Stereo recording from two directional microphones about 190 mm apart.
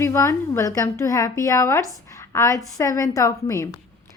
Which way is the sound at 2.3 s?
15° left (ahead or behind).